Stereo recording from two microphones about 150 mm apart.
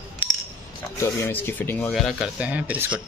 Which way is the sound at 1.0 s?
15° left (ahead or behind).